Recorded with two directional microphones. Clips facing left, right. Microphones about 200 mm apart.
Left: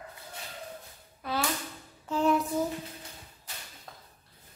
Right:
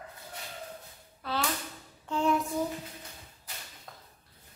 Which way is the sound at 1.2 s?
15° left (ahead or behind).